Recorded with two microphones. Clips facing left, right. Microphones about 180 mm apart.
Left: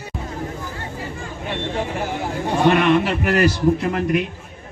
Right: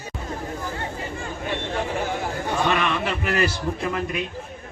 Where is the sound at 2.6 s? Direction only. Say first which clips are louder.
Left 9 dB; 50° left (ahead or behind).